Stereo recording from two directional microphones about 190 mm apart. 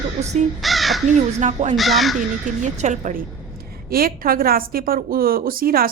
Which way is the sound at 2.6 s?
40° right (ahead or behind).